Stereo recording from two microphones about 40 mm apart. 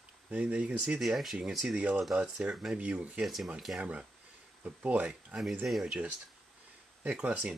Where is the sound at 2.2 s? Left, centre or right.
Right.